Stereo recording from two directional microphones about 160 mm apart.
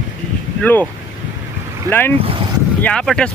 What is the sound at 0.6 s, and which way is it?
Speech, 10° left (ahead or behind).